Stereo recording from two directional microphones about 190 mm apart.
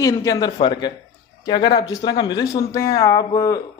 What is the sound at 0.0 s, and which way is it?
A man's voice, 20° left (ahead or behind).